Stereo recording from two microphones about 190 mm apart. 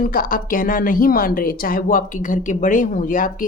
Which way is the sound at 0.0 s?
50° left (ahead or behind).